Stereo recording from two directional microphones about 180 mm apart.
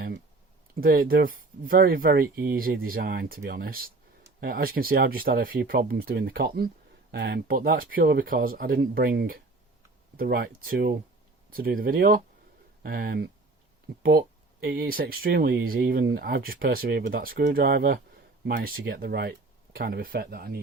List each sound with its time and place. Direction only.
0.8 s speech: 50° right (ahead or behind)